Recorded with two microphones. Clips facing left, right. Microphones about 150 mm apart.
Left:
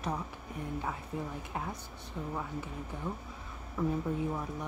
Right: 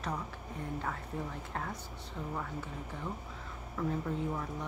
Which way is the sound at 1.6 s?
15° left (ahead or behind).